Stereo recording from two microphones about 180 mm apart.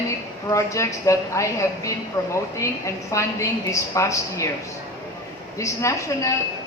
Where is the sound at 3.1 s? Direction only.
15° left (ahead or behind).